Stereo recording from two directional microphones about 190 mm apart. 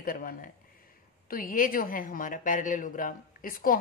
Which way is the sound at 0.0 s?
50° left (ahead or behind).